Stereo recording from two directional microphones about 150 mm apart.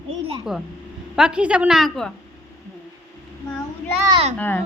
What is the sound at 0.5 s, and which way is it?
A woman's voice, centre (ahead or behind).